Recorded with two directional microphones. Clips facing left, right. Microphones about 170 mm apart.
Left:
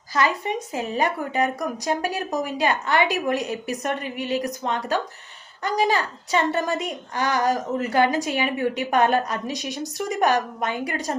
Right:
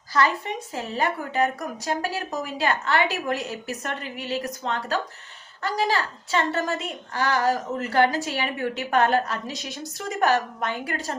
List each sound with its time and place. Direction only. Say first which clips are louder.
0.2 s a woman's voice: left 1 dB; 15° left (ahead or behind)